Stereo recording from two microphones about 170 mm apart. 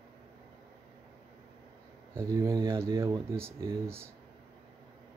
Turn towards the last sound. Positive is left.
turn(degrees=-15)  # may be behind; listen again after turning